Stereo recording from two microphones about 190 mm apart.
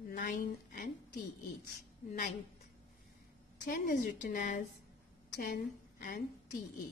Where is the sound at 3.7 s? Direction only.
45° left (ahead or behind).